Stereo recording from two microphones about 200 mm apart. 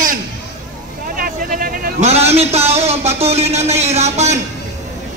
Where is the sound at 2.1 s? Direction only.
30° right (ahead or behind).